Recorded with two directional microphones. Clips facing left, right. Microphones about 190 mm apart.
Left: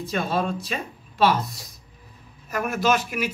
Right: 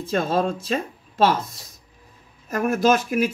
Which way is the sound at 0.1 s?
40° right (ahead or behind).